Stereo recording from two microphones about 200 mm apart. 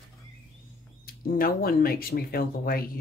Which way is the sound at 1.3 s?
45° left (ahead or behind).